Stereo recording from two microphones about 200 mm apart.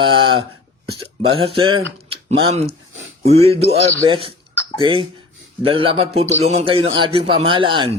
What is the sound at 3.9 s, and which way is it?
Speech, 15° right (ahead or behind).